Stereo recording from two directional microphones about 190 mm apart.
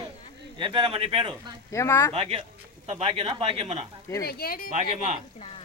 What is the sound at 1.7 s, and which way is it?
Speech, 15° left (ahead or behind).